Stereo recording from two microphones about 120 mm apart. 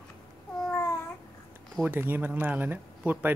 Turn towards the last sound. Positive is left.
turn(degrees=-15)  # may be behind; listen again after turning